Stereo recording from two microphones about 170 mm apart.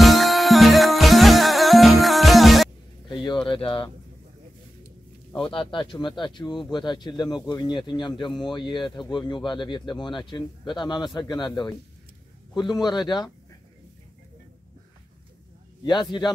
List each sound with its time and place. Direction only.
0.0 s music: centre (ahead or behind)
3.1 s a sound: 25° left (ahead or behind)
5.3 s speech: 30° left (ahead or behind)
12.7 s speech: 25° left (ahead or behind)
15.8 s speech: 25° left (ahead or behind)